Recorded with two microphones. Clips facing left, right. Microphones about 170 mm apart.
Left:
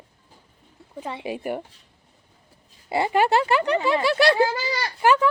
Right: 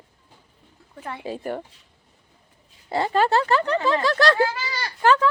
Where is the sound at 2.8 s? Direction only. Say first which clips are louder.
Even; 15° left (ahead or behind).